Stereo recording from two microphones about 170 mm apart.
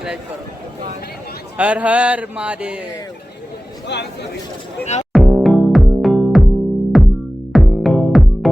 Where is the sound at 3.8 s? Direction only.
75° left (ahead or behind).